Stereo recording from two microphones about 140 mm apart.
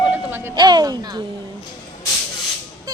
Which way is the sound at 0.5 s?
30° right (ahead or behind).